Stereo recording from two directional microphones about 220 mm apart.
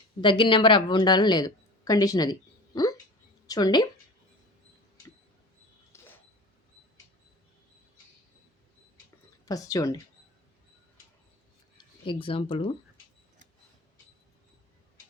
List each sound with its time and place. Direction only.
0.2 s speech: 20° left (ahead or behind)
2.7 s a sound: 20° left (ahead or behind)
3.4 s speech: 15° left (ahead or behind)
5.9 s a sound: 10° left (ahead or behind)
9.5 s speech: 15° left (ahead or behind)
12.0 s speech: 25° left (ahead or behind)